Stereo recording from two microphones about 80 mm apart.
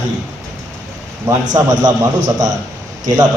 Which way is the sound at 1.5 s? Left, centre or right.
Right.